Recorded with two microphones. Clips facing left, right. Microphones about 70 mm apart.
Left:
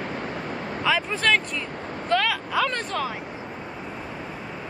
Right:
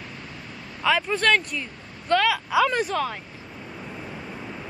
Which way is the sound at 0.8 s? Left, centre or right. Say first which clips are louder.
Right 2 dB; centre.